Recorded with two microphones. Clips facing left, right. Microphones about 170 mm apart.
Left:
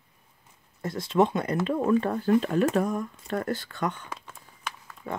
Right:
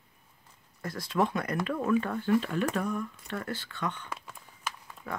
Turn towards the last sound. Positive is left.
turn(degrees=25)  # may be behind; listen again after turning